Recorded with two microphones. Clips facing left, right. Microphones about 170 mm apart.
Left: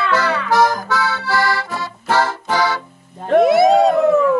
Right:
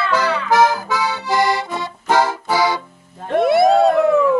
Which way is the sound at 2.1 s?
10° right (ahead or behind).